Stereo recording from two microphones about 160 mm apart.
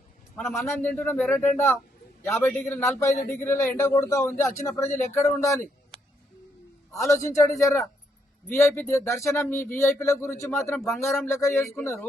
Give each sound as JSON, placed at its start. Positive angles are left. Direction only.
{"t": 0.4, "sound": "a man's voice", "side_deg": 15}
{"t": 6.9, "sound": "a man's voice", "side_deg": 20}
{"t": 10.8, "sound": "speech", "side_deg": 0}
{"t": 11.0, "sound": "a man's voice", "side_deg": 15}